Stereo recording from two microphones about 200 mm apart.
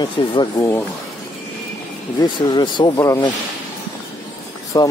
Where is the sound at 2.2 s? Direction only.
20° left (ahead or behind).